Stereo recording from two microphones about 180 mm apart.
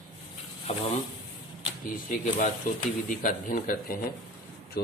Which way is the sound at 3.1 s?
45° left (ahead or behind).